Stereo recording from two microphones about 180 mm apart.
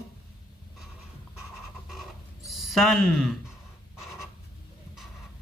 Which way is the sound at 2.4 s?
Centre (ahead or behind).